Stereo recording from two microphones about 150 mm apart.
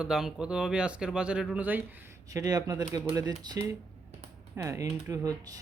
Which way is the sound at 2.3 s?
25° right (ahead or behind).